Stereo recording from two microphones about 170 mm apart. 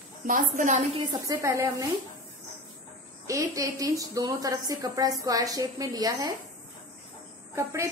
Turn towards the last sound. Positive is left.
turn(degrees=-15)  # may be behind; listen again after turning